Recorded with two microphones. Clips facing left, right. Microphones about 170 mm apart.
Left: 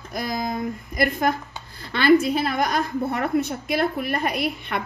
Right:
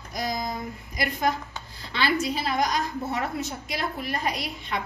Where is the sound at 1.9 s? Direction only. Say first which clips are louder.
Left 9 dB; 55° left (ahead or behind).